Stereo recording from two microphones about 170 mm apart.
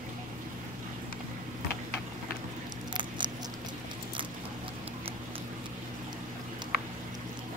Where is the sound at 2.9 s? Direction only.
25° right (ahead or behind).